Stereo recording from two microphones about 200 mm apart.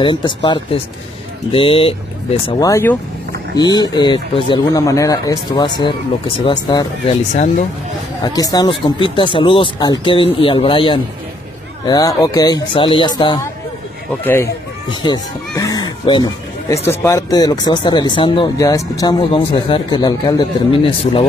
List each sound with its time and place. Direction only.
0.0 s speech: 25° left (ahead or behind)
2.4 s speech: 15° left (ahead or behind)
7.1 s speech: 35° left (ahead or behind)
8.2 s speech: 20° left (ahead or behind)
14.2 s speech: 10° left (ahead or behind)
14.9 s speech: 20° left (ahead or behind)